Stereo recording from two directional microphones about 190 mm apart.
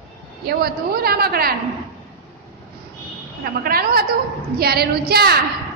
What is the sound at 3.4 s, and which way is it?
A woman's voice, 50° right (ahead or behind).